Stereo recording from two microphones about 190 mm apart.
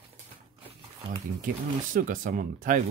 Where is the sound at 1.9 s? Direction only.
45° right (ahead or behind).